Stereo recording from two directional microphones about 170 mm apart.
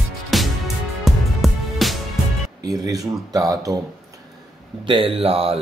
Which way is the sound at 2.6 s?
20° right (ahead or behind).